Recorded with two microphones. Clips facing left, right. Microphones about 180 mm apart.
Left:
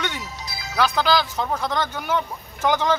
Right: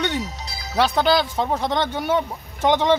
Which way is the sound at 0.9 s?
25° right (ahead or behind).